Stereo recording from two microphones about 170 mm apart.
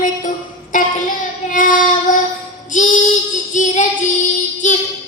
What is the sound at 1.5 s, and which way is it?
Child singing, 55° left (ahead or behind).